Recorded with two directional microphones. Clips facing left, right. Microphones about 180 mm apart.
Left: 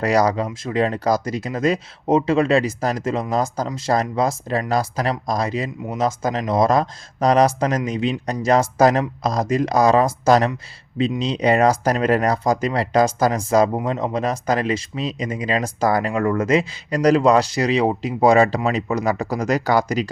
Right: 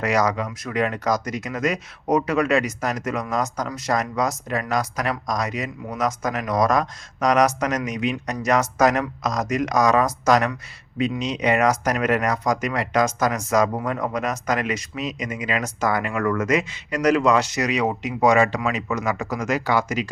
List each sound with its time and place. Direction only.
0.0 s speech: 35° left (ahead or behind)